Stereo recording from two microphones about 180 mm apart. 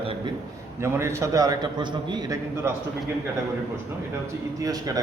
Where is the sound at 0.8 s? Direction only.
15° right (ahead or behind).